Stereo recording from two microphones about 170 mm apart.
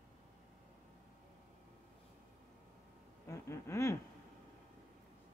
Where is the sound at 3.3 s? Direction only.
15° left (ahead or behind).